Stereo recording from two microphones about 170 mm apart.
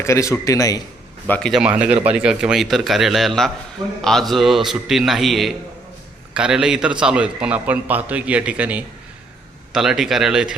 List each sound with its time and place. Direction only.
0.0 s a man's voice: 15° left (ahead or behind)
1.3 s a man's voice: 5° left (ahead or behind)